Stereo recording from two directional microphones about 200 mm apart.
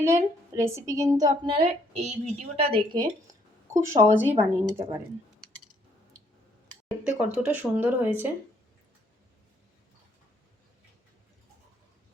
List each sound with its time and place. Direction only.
0.0 s speech: 15° right (ahead or behind)
7.0 s speech: 5° right (ahead or behind)